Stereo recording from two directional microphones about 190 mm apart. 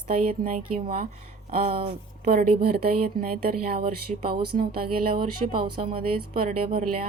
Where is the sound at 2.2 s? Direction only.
50° right (ahead or behind).